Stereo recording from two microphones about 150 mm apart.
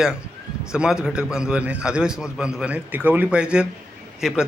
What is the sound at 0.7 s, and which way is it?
A man's voice, 5° right (ahead or behind).